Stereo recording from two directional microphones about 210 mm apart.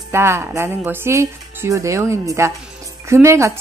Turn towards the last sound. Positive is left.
turn(degrees=-15)  # may be behind; listen again after turning